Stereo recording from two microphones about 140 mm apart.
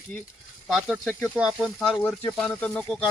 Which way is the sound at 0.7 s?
10° right (ahead or behind).